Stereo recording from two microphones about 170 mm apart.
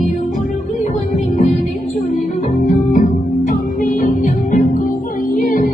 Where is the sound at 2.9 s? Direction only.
50° left (ahead or behind).